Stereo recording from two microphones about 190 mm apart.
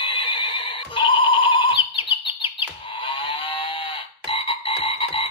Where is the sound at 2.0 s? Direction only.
25° left (ahead or behind).